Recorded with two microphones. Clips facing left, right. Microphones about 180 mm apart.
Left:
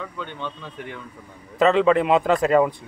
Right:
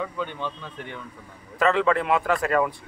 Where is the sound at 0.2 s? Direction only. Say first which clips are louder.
Right 2 dB; 5° right (ahead or behind).